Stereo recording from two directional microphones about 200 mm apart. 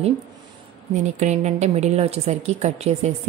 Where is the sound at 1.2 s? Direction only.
35° right (ahead or behind).